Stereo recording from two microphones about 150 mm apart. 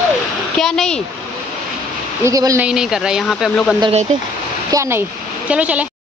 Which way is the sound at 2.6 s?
5° right (ahead or behind).